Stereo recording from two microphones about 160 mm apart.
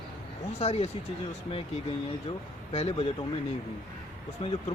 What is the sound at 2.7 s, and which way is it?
Speech, 40° left (ahead or behind).